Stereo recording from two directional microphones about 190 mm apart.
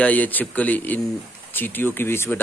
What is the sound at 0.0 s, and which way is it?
Speech, 10° left (ahead or behind).